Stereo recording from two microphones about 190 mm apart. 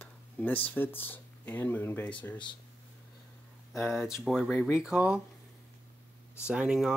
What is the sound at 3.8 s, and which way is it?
Speech, centre (ahead or behind).